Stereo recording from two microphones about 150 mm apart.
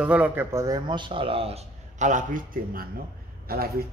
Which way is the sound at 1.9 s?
55° right (ahead or behind).